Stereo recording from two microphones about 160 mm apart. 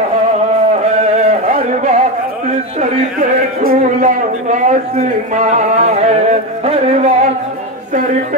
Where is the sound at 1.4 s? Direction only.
50° right (ahead or behind).